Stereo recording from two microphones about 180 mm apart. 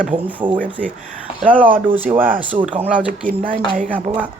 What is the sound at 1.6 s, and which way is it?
Speech, 10° right (ahead or behind).